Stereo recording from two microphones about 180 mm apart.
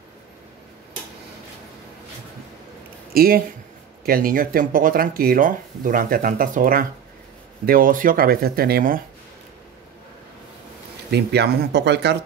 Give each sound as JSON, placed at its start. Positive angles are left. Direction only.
{"t": 3.1, "sound": "speech", "side_deg": -55}
{"t": 11.1, "sound": "speech", "side_deg": -65}